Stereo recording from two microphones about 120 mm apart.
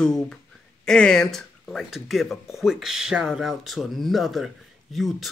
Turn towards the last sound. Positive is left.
turn(degrees=0)  # may be behind; listen again after turning